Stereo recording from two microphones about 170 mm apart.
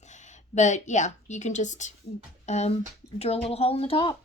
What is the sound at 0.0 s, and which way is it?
A woman's voice, 45° left (ahead or behind).